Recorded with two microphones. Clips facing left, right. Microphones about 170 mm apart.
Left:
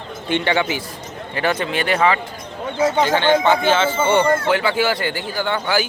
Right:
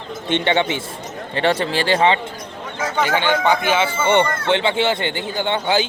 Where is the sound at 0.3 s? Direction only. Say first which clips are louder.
Right 1 dB; 25° right (ahead or behind).